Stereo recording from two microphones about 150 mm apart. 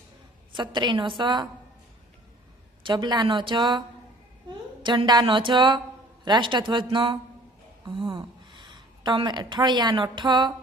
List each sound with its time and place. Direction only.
0.5 s speech: 30° right (ahead or behind)
2.8 s a woman's voice: 30° right (ahead or behind)